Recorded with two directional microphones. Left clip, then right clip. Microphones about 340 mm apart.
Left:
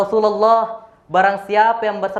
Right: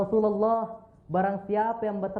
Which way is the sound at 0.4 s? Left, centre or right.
Centre.